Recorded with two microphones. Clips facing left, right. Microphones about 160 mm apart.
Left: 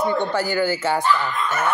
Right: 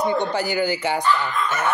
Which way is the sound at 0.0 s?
15° right (ahead or behind).